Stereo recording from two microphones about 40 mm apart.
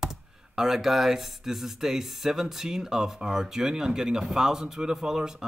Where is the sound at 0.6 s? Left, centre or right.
Centre.